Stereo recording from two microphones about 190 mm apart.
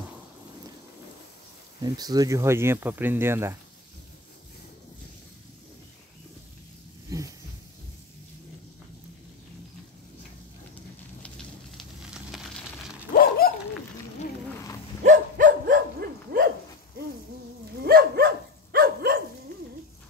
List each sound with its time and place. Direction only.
1.8 s speech: 20° right (ahead or behind)
7.1 s a sound: 15° right (ahead or behind)
11.2 s fire: centre (ahead or behind)
13.1 s dog: 50° left (ahead or behind)
15.0 s dog: 45° right (ahead or behind)
17.8 s dog: 55° right (ahead or behind)